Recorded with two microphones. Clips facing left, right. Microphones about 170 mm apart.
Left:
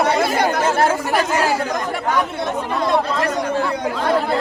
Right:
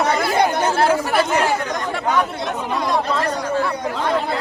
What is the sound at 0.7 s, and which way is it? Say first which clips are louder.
Speech: even; 45° left (ahead or behind).